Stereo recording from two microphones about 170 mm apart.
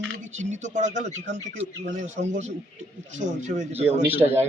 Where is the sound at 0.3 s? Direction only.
45° right (ahead or behind).